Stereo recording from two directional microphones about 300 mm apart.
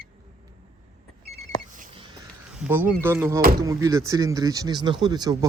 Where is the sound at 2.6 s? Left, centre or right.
Centre.